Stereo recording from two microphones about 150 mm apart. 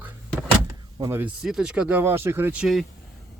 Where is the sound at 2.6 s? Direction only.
Centre (ahead or behind).